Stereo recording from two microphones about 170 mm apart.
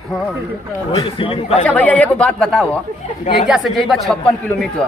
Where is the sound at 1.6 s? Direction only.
10° left (ahead or behind).